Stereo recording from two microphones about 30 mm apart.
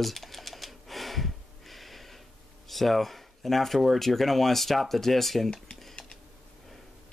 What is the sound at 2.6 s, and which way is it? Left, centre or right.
Speech, centre.